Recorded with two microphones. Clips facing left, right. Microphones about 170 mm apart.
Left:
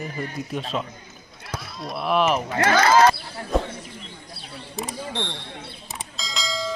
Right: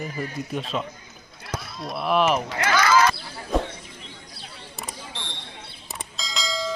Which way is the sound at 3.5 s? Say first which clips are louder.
Left 1 dB; centre (ahead or behind).